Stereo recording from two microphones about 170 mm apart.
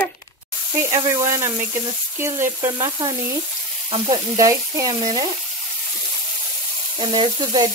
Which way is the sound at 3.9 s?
20° right (ahead or behind).